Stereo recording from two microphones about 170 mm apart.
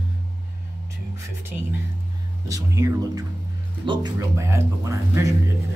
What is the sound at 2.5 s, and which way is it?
Speech, 15° right (ahead or behind).